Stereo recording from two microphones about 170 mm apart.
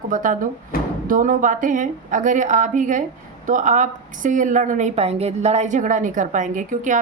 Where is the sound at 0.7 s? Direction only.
60° left (ahead or behind).